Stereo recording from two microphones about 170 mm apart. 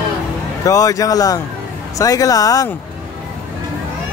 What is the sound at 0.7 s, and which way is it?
A man's voice, 20° left (ahead or behind).